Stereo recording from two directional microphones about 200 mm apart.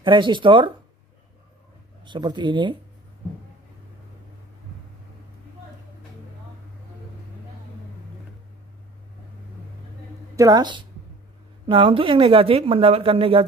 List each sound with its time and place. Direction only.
0.0 s speech: 25° right (ahead or behind)
2.0 s speech: 20° right (ahead or behind)
10.3 s speech: 20° right (ahead or behind)